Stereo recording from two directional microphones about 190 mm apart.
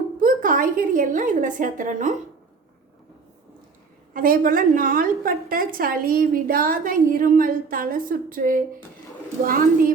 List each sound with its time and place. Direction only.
0.2 s a woman's voice: 45° right (ahead or behind)
4.1 s a woman's voice: 50° right (ahead or behind)